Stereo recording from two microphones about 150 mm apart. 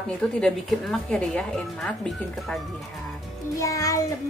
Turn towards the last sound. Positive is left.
turn(degrees=20)  # may be behind; listen again after turning